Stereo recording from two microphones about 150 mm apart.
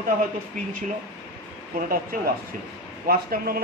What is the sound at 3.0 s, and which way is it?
Speech, 85° right.